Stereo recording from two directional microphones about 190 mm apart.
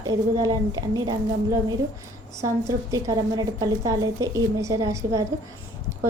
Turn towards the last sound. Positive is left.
turn(degrees=-15)  # may be behind; listen again after turning